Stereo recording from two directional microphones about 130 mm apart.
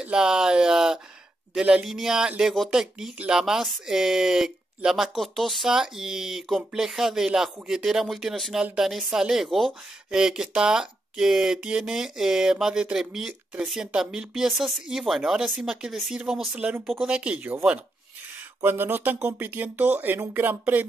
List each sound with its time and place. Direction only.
0.0 s speech: 5° right (ahead or behind)